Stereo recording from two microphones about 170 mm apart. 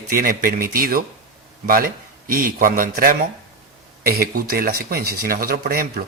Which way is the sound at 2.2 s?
55° right (ahead or behind).